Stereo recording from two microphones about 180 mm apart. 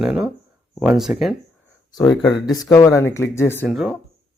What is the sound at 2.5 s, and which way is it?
Speech, 20° left (ahead or behind).